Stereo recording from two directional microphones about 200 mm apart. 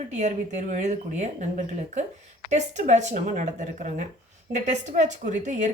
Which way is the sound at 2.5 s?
35° right (ahead or behind).